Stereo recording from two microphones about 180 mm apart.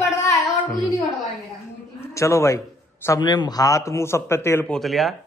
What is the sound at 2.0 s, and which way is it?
A man's voice, 15° left (ahead or behind).